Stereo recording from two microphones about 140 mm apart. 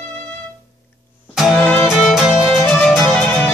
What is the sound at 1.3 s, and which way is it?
Music, centre (ahead or behind).